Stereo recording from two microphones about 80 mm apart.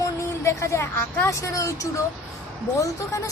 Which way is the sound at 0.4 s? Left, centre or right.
Left.